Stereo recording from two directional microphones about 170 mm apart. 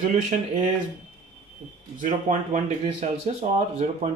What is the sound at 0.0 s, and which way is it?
Speech, 45° right (ahead or behind).